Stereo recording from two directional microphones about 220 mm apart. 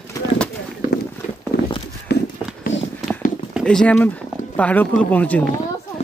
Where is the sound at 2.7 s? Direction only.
55° left (ahead or behind).